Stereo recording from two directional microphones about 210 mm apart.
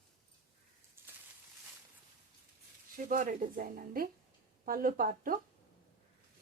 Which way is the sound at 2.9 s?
40° right (ahead or behind).